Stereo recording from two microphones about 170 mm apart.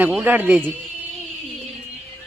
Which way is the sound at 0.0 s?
10° right (ahead or behind).